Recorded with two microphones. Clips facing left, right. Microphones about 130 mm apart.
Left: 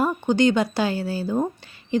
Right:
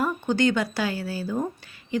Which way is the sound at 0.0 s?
20° left (ahead or behind).